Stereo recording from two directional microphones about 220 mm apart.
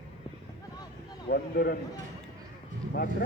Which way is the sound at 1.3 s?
45° left (ahead or behind).